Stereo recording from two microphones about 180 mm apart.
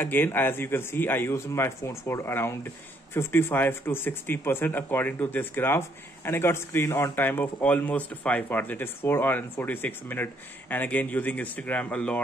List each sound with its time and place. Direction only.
0.0 s speech: 10° left (ahead or behind)